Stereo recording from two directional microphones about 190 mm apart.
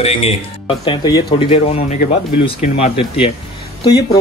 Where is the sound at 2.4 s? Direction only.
35° left (ahead or behind).